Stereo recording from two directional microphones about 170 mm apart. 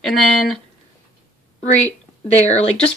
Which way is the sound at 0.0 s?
Centre (ahead or behind).